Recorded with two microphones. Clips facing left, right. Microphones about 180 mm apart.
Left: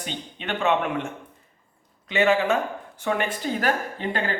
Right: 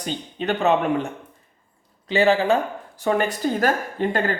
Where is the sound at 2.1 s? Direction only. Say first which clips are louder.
Right 3 dB; 35° right (ahead or behind).